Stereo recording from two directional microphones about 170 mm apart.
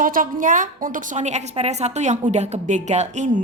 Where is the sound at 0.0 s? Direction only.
55° right (ahead or behind).